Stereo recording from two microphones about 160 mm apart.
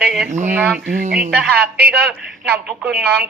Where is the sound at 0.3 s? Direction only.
50° right (ahead or behind).